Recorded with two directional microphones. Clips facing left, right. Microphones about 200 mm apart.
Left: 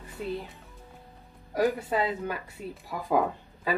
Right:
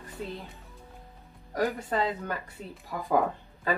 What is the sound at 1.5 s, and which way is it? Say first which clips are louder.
Speech: left 3 dB; 10° left (ahead or behind).